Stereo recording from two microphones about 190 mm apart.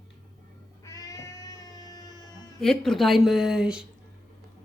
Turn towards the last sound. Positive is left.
turn(degrees=-5)  # may be behind; listen again after turning